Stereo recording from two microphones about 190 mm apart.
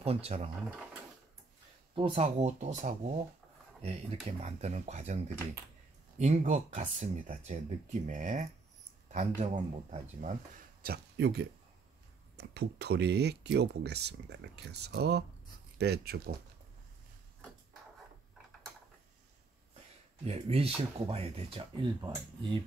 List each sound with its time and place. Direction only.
0.0 s speech: 35° right (ahead or behind)
2.0 s speech: 30° right (ahead or behind)
10.8 s speech: 60° right (ahead or behind)
20.2 s speech: 30° right (ahead or behind)